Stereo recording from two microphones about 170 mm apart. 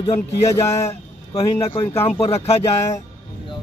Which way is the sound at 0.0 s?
20° left (ahead or behind).